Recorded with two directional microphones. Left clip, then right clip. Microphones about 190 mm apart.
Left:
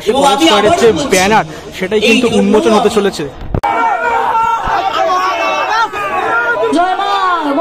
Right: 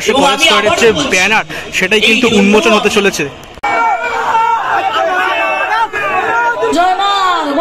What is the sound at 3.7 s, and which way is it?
Hubbub, 45° right (ahead or behind).